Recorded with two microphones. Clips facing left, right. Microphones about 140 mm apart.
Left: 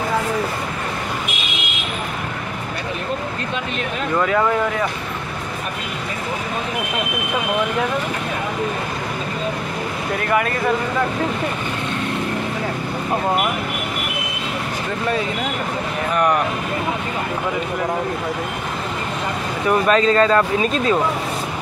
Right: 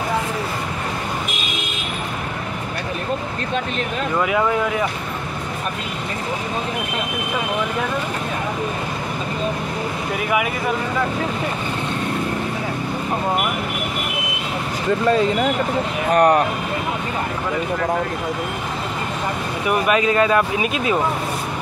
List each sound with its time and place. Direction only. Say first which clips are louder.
10.2 s speech: left 2 dB; 10° right (ahead or behind)
16.1 s speech: right 4 dB; 40° right (ahead or behind)
19.7 s speech: left 2 dB; 15° right (ahead or behind)